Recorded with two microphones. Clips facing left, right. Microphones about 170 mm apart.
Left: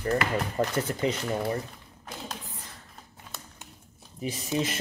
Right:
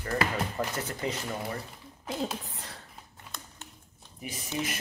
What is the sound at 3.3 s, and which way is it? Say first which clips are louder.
Typing: even; 5° left (ahead or behind).